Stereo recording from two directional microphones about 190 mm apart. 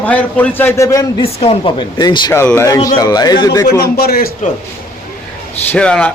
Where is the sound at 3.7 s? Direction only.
55° left (ahead or behind).